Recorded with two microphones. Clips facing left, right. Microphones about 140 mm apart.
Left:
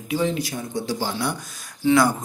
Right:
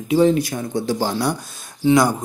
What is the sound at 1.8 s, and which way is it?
Speech, 15° right (ahead or behind).